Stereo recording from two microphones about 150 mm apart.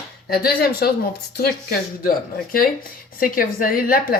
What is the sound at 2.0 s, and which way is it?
A woman's voice, 75° left (ahead or behind).